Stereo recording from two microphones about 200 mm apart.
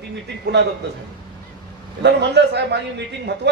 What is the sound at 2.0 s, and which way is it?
A man's voice, 60° right (ahead or behind).